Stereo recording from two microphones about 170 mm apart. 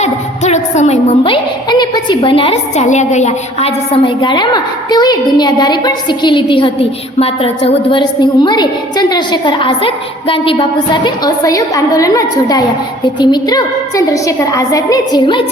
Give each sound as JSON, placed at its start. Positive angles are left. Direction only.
{"t": 0.0, "sound": "music", "side_deg": 40}
{"t": 1.2, "sound": "a woman's voice", "side_deg": 25}